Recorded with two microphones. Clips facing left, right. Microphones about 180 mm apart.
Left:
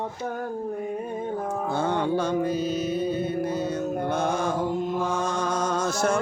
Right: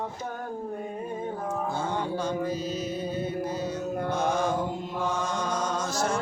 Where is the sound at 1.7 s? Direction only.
65° left (ahead or behind).